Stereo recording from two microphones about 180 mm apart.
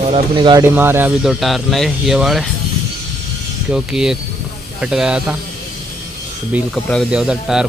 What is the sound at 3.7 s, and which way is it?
Speech, 5° right (ahead or behind).